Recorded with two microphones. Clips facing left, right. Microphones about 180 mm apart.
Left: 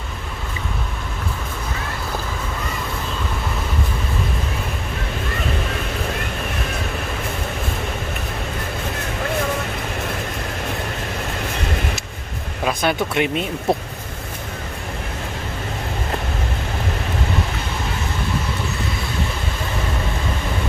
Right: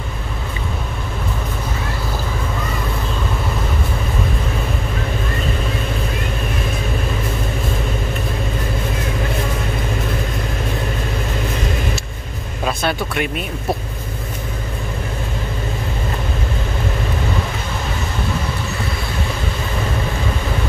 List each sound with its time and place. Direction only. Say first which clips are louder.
12.6 s speech: left 1 dB; 20° left (ahead or behind)